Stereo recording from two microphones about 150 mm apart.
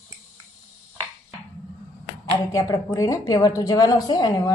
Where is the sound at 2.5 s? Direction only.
25° left (ahead or behind).